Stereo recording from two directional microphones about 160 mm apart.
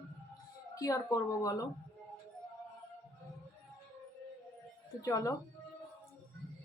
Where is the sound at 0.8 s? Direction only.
20° left (ahead or behind).